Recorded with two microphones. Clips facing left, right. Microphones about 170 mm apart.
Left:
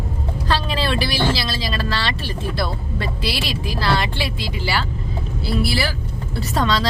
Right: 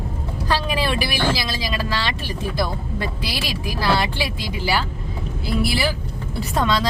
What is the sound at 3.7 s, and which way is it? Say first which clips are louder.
Speech: right 1 dB; 10° right (ahead or behind).